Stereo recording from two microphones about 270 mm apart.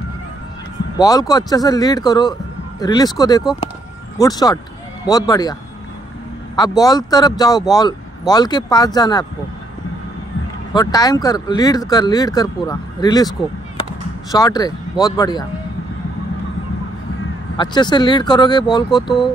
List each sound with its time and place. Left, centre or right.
0.9 s speech: centre
10.7 s speech: centre
14.3 s speech: centre
17.6 s speech: centre